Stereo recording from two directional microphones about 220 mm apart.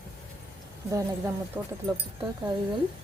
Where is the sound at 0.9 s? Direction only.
15° right (ahead or behind).